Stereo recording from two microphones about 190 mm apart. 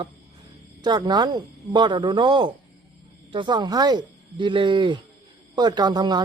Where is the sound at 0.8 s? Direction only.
20° right (ahead or behind).